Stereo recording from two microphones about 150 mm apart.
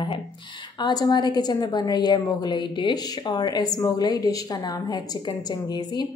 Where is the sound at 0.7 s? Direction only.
25° left (ahead or behind).